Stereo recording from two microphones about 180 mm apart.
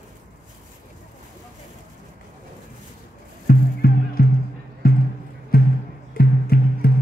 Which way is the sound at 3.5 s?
55° left (ahead or behind).